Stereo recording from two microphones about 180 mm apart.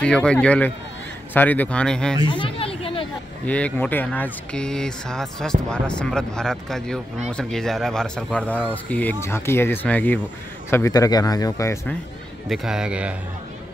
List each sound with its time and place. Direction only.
0.0 s speech: 5° left (ahead or behind)
2.2 s a sound: 25° left (ahead or behind)
3.4 s speech: 10° left (ahead or behind)
12.4 s speech: 5° right (ahead or behind)